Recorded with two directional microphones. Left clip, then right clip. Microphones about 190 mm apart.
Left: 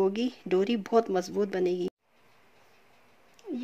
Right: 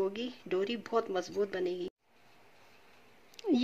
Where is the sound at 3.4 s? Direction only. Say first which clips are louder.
Right 8 dB; 45° right (ahead or behind).